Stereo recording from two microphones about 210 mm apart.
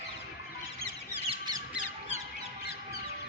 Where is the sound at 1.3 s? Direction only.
20° right (ahead or behind).